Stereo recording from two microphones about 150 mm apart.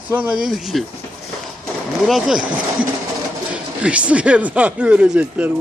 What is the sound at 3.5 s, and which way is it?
Speech, 10° right (ahead or behind).